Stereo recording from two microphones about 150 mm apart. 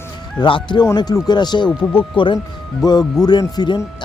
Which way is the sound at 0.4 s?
35° left (ahead or behind).